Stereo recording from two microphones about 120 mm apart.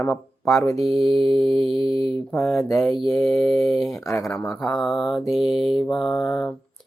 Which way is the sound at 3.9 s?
25° left (ahead or behind).